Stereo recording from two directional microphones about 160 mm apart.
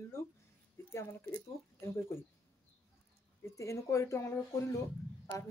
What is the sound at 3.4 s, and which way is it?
Speech, 20° left (ahead or behind).